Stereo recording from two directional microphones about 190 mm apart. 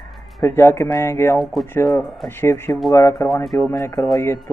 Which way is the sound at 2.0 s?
10° left (ahead or behind).